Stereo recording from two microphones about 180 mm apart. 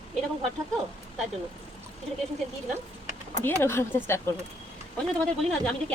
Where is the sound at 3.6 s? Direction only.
15° left (ahead or behind).